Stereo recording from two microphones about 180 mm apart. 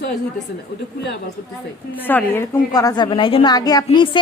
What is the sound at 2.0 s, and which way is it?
A woman's voice, 10° left (ahead or behind).